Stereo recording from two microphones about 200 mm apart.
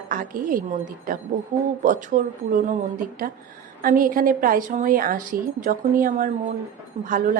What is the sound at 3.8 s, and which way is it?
A woman's voice, 45° right (ahead or behind).